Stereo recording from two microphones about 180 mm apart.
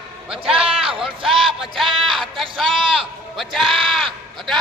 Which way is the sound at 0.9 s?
30° right (ahead or behind).